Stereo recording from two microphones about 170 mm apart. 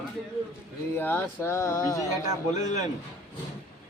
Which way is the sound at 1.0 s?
10° left (ahead or behind).